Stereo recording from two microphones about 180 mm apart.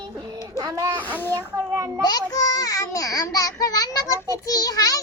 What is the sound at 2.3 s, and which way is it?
A child's voice, 20° left (ahead or behind).